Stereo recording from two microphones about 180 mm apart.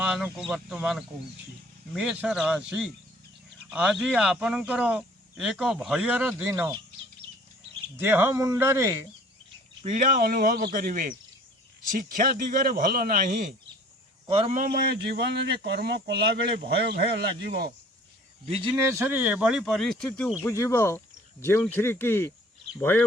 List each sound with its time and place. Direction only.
0.0 s a sound: 5° right (ahead or behind)
0.3 s speech: centre (ahead or behind)
7.9 s speech: 10° right (ahead or behind)
9.8 s a man's voice: 45° right (ahead or behind)
14.3 s a man's voice: 30° right (ahead or behind)
14.5 s speech: 50° right (ahead or behind)
18.4 s a man's voice: 30° right (ahead or behind)
18.8 s speech: 15° right (ahead or behind); by 20.3 s 5° left (ahead or behind)
20.4 s speech: 15° left (ahead or behind)